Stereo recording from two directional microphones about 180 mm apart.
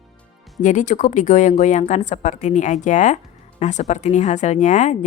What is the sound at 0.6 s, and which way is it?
A woman's voice, 45° left (ahead or behind).